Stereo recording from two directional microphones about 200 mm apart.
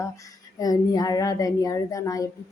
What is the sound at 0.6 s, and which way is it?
A woman's voice, 20° left (ahead or behind).